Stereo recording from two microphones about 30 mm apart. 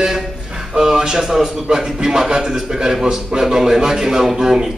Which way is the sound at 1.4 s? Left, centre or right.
Right.